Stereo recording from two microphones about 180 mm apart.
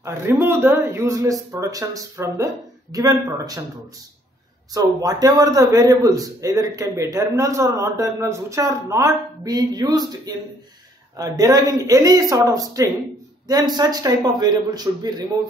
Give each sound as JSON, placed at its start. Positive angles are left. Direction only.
{"t": 0.0, "sound": "a man's voice", "side_deg": -15}
{"t": 4.7, "sound": "a man's voice", "side_deg": -20}